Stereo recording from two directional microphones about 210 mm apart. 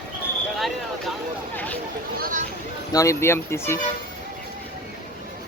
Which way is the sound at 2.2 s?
40° right (ahead or behind).